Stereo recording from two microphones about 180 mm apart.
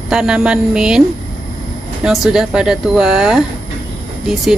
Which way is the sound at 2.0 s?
5° right (ahead or behind).